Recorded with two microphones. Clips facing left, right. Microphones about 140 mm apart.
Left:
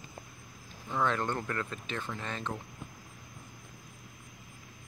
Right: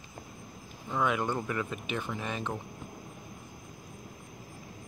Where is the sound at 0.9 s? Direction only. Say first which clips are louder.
Right 1 dB; 10° right (ahead or behind).